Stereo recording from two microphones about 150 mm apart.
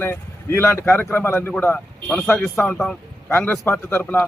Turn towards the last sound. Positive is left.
turn(degrees=10)  # may be behind; listen again after turning